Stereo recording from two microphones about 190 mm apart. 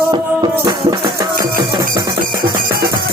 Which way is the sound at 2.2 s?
50° right (ahead or behind).